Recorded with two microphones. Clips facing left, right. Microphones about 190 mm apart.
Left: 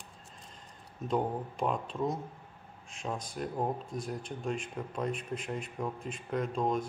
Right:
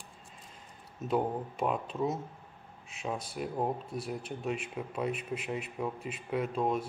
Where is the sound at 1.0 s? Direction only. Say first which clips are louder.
Right 1 dB; 5° right (ahead or behind).